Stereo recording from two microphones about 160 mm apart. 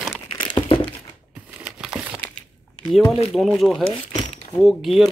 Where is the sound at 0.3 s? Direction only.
30° left (ahead or behind).